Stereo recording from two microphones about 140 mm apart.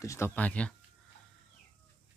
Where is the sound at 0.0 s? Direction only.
20° left (ahead or behind).